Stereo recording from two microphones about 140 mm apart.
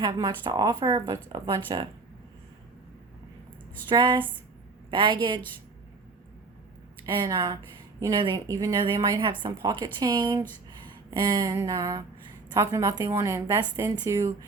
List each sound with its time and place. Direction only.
0.0 s speech: 35° right (ahead or behind)
3.8 s speech: 35° right (ahead or behind)
7.0 s a woman's voice: 25° right (ahead or behind)
10.8 s a sound: 30° right (ahead or behind)
12.5 s a woman's voice: 25° right (ahead or behind)